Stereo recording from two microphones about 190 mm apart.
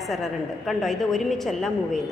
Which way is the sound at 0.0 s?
Centre (ahead or behind).